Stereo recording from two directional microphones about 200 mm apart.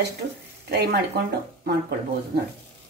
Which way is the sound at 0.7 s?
55° right (ahead or behind).